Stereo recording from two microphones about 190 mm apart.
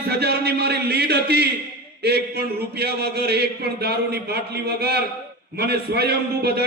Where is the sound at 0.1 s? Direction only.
55° right (ahead or behind).